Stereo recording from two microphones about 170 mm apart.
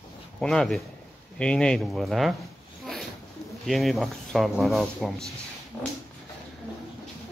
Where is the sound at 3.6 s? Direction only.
Centre (ahead or behind).